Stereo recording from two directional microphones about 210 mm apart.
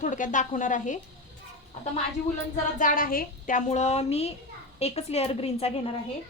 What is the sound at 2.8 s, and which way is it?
A woman's voice, 40° left (ahead or behind).